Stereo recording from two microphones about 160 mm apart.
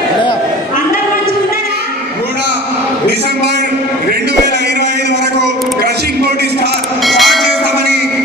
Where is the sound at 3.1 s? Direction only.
90° right.